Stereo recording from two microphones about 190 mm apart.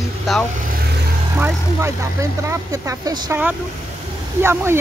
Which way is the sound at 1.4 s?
15° right (ahead or behind).